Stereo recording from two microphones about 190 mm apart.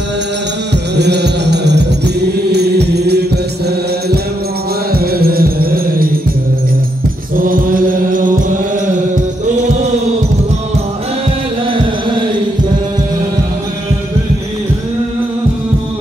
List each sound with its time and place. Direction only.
0.9 s music: 60° right (ahead or behind)
4.9 s music: 55° right (ahead or behind)
7.3 s mantra: 45° right (ahead or behind)